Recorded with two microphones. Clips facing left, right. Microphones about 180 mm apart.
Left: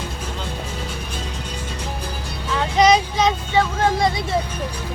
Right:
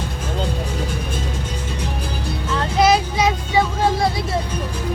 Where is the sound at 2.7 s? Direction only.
5° right (ahead or behind).